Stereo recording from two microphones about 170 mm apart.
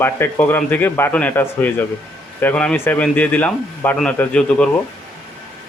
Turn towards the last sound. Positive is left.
turn(degrees=5)  # may be behind; listen again after turning